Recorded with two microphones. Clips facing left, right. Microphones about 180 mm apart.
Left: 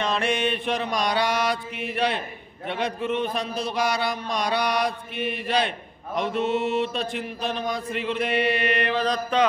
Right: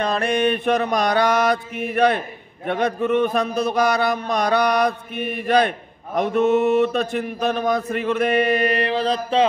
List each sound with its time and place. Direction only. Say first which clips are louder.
0.0 s mantra: right 5 dB; 40° right (ahead or behind)